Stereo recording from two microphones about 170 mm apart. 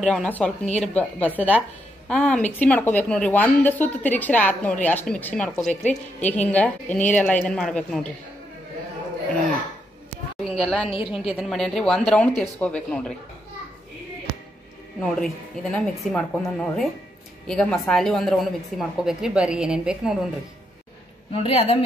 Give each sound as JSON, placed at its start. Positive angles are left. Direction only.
{"t": 0.0, "sound": "a woman's voice", "side_deg": 5}
{"t": 10.4, "sound": "a sound", "side_deg": 5}
{"t": 10.9, "sound": "a woman's voice", "side_deg": 35}
{"t": 11.3, "sound": "a woman's voice", "side_deg": 0}
{"t": 15.0, "sound": "a woman's voice", "side_deg": 5}
{"t": 21.3, "sound": "a woman's voice", "side_deg": 35}